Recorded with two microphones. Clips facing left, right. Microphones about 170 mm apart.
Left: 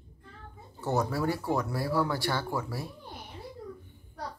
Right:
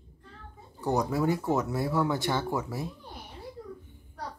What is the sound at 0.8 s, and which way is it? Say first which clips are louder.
Speech: right 2 dB; 15° right (ahead or behind).